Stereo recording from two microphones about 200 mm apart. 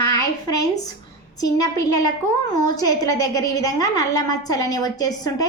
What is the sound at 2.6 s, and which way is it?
A woman's voice, 20° left (ahead or behind).